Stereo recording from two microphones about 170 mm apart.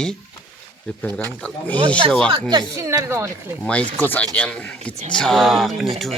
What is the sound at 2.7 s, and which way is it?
Speech, 15° right (ahead or behind).